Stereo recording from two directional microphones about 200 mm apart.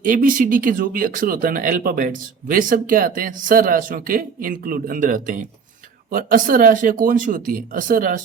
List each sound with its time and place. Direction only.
0.0 s speech: 45° right (ahead or behind)